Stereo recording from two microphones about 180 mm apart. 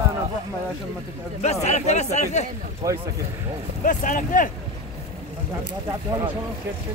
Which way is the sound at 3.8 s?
45° left (ahead or behind).